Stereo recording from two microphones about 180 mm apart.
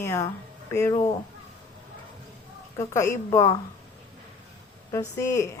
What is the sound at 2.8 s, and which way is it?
Speech, 15° left (ahead or behind).